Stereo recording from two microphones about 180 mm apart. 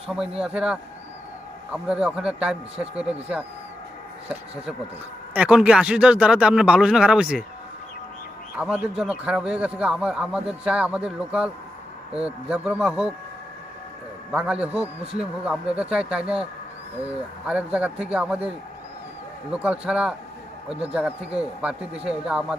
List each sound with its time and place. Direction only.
0.1 s speech: 5° right (ahead or behind)
5.3 s speech: 5° right (ahead or behind)
8.5 s speech: 5° right (ahead or behind)
14.3 s speech: 5° right (ahead or behind)
14.8 s speech: 35° right (ahead or behind)
15.7 s a man's voice: 5° right (ahead or behind)
21.3 s speech: 5° right (ahead or behind)